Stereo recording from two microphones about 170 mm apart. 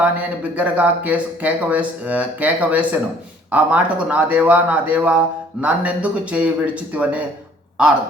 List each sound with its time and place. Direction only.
0.0 s speech: 10° right (ahead or behind)